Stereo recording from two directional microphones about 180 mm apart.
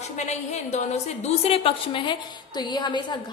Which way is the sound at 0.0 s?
40° left (ahead or behind).